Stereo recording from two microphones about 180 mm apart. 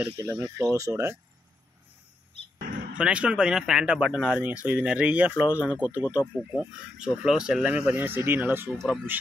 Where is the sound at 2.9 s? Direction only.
5° right (ahead or behind).